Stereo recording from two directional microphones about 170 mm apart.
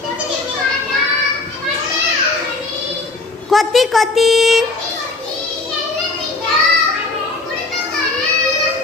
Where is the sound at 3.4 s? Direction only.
Centre (ahead or behind).